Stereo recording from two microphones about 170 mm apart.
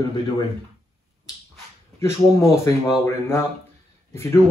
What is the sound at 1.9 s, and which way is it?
Speech, 15° left (ahead or behind).